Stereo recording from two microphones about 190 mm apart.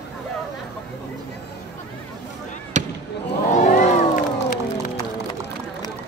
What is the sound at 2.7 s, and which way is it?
Basketball bounce, 40° right (ahead or behind).